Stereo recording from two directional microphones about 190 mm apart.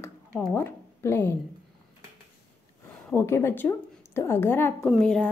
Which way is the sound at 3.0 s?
15° left (ahead or behind).